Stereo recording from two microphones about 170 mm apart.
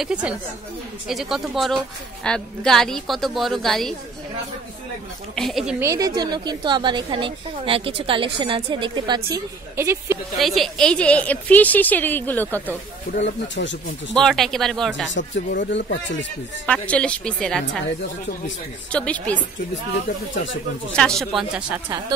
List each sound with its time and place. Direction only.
0.0 s a woman's voice: 5° right (ahead or behind)
5.3 s a woman's voice: centre (ahead or behind)
5.8 s a woman's voice: 20° right (ahead or behind)
9.8 s speech: 15° right (ahead or behind)
10.3 s a woman's voice: centre (ahead or behind)
13.2 s speech: 90° left
14.1 s a woman's voice: centre (ahead or behind)
15.0 s speech: 90° left
16.6 s a woman's voice: 5° left (ahead or behind)
18.9 s a woman's voice: 5° left (ahead or behind)
20.9 s a woman's voice: 5° left (ahead or behind)